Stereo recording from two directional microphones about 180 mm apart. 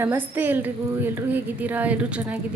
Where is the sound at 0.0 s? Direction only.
10° right (ahead or behind).